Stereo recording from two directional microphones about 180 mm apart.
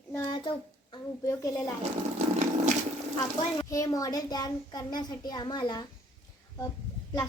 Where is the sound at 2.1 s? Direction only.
40° right (ahead or behind).